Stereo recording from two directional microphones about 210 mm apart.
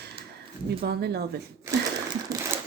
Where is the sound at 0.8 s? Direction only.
50° right (ahead or behind).